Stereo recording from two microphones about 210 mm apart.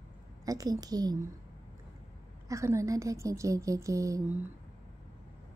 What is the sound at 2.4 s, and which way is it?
A woman's voice, 15° right (ahead or behind).